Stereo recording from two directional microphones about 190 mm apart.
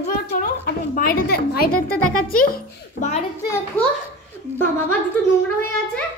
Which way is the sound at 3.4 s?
15° left (ahead or behind).